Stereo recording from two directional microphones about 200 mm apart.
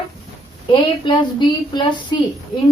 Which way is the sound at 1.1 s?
20° left (ahead or behind).